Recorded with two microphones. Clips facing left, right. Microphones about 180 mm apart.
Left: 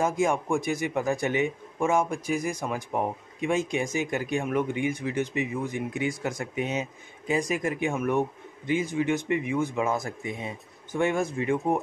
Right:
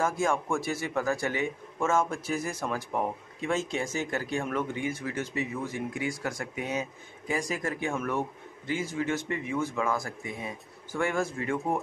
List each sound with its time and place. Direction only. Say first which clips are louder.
0.0 s a man's voice: left 3 dB; 15° left (ahead or behind)